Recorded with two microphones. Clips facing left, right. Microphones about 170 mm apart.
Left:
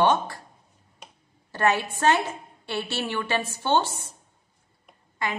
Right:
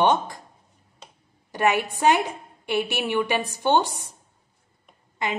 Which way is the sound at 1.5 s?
15° right (ahead or behind).